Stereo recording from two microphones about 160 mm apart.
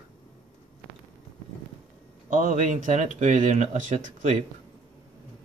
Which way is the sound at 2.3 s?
50° right (ahead or behind).